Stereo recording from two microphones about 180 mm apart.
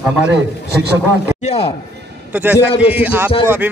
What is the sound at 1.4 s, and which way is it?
Speech, 35° left (ahead or behind).